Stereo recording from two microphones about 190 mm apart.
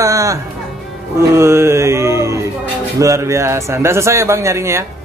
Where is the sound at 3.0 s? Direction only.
15° right (ahead or behind).